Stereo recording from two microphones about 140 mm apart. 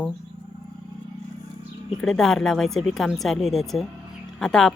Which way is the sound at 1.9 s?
5° left (ahead or behind).